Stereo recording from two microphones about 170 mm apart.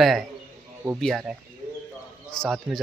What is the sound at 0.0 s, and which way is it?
Speech, centre (ahead or behind).